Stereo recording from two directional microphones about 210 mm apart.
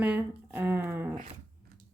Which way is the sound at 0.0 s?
5° right (ahead or behind).